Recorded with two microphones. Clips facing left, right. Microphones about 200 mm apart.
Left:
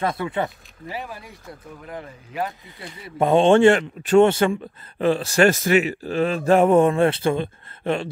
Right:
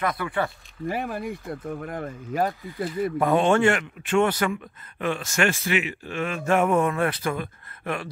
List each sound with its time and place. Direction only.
0.0 s speech: 25° left (ahead or behind)
0.8 s speech: 50° right (ahead or behind)
3.2 s speech: 25° left (ahead or behind)